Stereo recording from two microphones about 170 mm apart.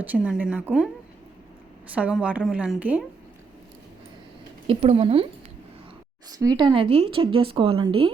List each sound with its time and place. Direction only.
0.0 s a woman's voice: 5° right (ahead or behind)
2.0 s a woman's voice: 5° right (ahead or behind)
4.6 s speech: 35° right (ahead or behind)
6.4 s speech: 25° right (ahead or behind)